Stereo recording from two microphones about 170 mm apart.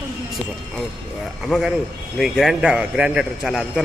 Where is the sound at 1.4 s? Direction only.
Centre (ahead or behind).